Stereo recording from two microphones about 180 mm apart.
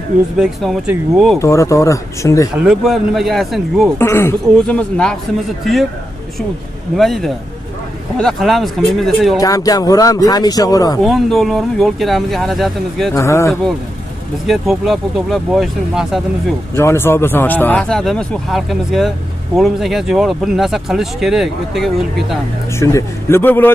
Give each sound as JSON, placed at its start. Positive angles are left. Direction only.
{"t": 0.4, "sound": "speech", "side_deg": 0}
{"t": 1.4, "sound": "speech", "side_deg": 15}
{"t": 2.5, "sound": "speech", "side_deg": -5}
{"t": 4.0, "sound": "speech", "side_deg": 15}
{"t": 7.0, "sound": "speech", "side_deg": 0}
{"t": 9.4, "sound": "speech", "side_deg": 20}
{"t": 11.0, "sound": "speech", "side_deg": 0}
{"t": 13.1, "sound": "speech", "side_deg": 15}
{"t": 14.4, "sound": "speech", "side_deg": 0}
{"t": 16.7, "sound": "speech", "side_deg": 15}
{"t": 22.8, "sound": "speech", "side_deg": 15}